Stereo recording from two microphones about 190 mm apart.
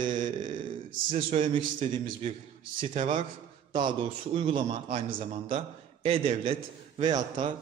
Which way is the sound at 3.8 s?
25° right (ahead or behind).